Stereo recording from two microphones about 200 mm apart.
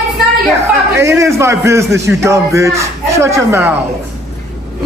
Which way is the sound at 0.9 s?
15° right (ahead or behind).